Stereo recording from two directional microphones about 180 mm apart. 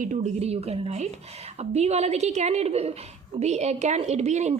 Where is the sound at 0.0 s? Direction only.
45° right (ahead or behind).